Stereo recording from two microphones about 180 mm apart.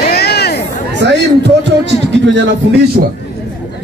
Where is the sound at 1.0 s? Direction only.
80° right.